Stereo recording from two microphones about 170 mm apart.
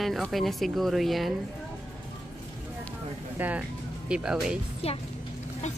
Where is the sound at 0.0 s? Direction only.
Centre (ahead or behind).